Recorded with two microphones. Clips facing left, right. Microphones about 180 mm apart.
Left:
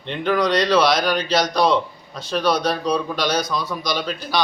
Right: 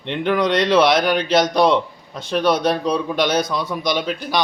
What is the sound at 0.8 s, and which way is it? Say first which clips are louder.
Speech: right 4 dB; 55° right (ahead or behind).